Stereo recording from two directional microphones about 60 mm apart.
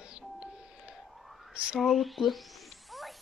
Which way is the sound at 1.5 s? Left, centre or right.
Centre.